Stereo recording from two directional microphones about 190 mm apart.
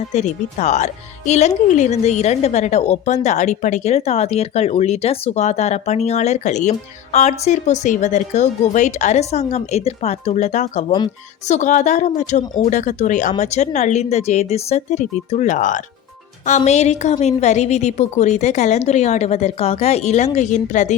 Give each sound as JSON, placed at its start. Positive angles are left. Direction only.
{"t": 0.1, "sound": "speech", "side_deg": 35}